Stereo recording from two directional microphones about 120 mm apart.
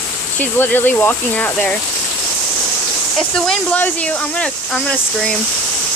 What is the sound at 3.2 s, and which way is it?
Speech, 5° left (ahead or behind).